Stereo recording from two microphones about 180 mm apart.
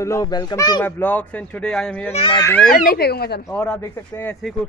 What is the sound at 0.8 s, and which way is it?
Speech, 10° left (ahead or behind).